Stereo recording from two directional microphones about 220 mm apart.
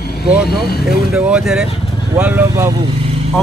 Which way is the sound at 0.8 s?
5° right (ahead or behind).